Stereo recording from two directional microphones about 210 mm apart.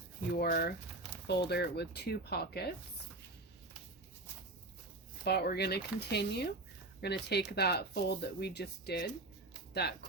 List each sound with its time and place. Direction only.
0.3 s speech: 50° left (ahead or behind)
5.2 s speech: 50° left (ahead or behind)